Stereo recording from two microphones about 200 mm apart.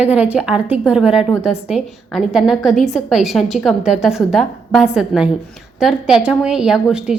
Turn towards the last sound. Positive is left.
turn(degrees=-5)  # may be behind; listen again after turning